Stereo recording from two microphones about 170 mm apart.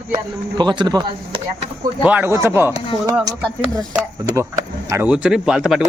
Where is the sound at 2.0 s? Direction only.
10° right (ahead or behind).